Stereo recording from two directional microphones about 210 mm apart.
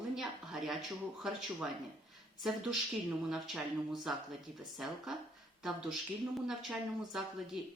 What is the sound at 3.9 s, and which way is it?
Speech, centre (ahead or behind).